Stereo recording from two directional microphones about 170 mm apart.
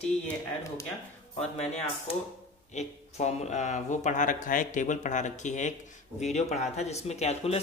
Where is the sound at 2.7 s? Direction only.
45° left (ahead or behind).